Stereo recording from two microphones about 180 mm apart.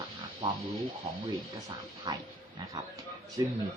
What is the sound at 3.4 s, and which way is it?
Speech, 20° right (ahead or behind).